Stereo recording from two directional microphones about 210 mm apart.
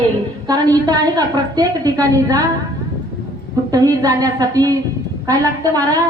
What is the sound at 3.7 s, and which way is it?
A woman's voice, 15° right (ahead or behind).